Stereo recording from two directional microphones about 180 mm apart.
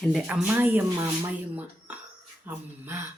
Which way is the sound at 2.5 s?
10° right (ahead or behind).